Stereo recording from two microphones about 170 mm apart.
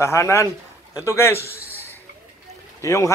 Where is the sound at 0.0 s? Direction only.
15° left (ahead or behind).